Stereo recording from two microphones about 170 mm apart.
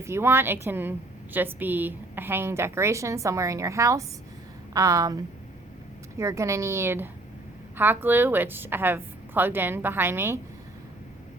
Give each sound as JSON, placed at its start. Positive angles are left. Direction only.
{"t": 0.0, "sound": "a woman's voice", "side_deg": -15}